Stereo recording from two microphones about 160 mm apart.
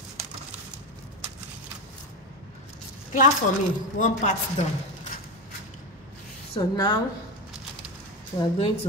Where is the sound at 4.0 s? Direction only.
50° left (ahead or behind).